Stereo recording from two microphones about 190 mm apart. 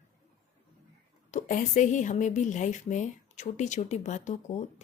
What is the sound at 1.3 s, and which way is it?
A woman's voice, 40° left (ahead or behind).